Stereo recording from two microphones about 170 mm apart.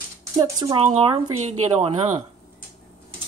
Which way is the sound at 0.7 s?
35° right (ahead or behind).